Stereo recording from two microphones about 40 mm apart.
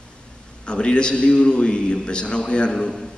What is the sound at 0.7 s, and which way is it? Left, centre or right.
A man's voice, left.